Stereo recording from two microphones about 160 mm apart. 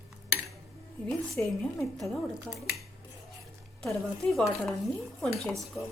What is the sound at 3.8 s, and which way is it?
A woman's voice, centre (ahead or behind).